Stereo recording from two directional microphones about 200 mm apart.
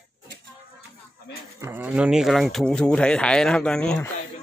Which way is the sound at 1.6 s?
10° right (ahead or behind).